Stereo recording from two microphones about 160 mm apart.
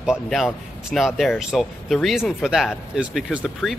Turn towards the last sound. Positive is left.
turn(degrees=-5)  # may be behind; listen again after turning